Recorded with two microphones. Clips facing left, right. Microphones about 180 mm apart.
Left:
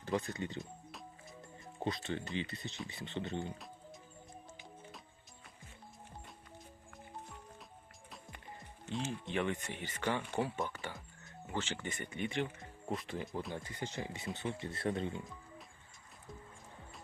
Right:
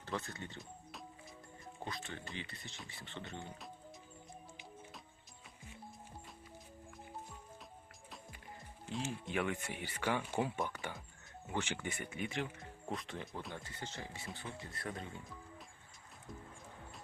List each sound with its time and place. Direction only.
0.0 s speech: 15° left (ahead or behind)
1.8 s speech: 20° left (ahead or behind)
8.9 s speech: centre (ahead or behind)
13.5 s speech: 15° left (ahead or behind)